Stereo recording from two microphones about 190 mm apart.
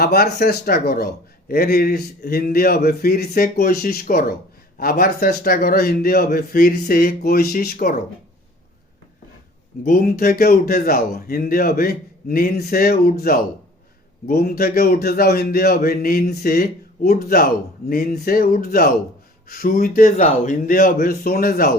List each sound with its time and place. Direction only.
0.0 s speech: 55° left (ahead or behind)
9.8 s speech: 50° left (ahead or behind)